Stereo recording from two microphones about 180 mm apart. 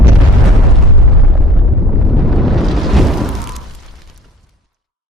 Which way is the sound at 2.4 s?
Centre (ahead or behind).